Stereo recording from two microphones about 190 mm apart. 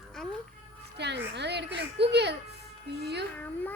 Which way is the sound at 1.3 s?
65° right (ahead or behind).